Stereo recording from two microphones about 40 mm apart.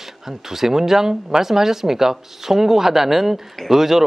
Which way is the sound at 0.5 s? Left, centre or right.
Centre.